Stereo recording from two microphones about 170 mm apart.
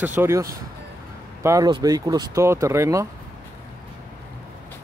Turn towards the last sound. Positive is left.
turn(degrees=-15)  # may be behind; listen again after turning